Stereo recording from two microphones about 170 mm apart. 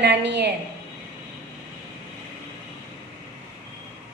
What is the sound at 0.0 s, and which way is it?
Speech, 90° right.